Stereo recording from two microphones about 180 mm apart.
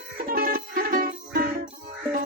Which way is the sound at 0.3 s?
55° right (ahead or behind).